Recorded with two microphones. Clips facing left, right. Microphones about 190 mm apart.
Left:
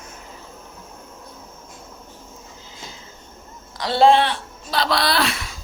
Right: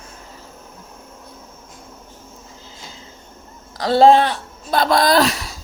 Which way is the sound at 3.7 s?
40° right (ahead or behind).